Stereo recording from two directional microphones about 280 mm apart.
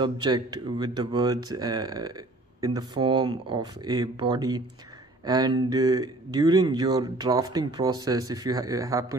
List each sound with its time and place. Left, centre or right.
0.0 s speech: centre